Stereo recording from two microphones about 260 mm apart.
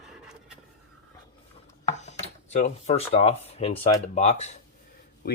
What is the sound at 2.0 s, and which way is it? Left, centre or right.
Speech, left.